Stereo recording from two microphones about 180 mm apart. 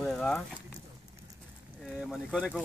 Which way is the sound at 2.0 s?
Centre (ahead or behind).